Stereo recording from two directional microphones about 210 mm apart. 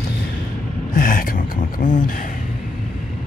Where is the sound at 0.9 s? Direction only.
40° left (ahead or behind).